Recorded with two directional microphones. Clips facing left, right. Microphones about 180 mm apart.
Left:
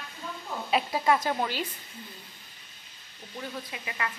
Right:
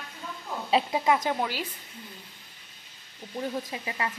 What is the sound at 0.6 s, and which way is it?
Speech, 30° right (ahead or behind).